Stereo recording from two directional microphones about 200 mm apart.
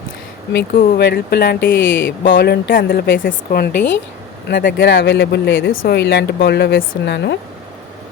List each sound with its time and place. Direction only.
0.5 s a woman's voice: 50° left (ahead or behind)
1.6 s speech: 10° left (ahead or behind)
2.2 s a woman's voice: 50° left (ahead or behind)
4.9 s speech: 60° left (ahead or behind)